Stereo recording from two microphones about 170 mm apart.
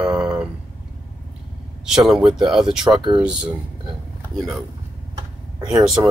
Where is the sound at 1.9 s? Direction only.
Centre (ahead or behind).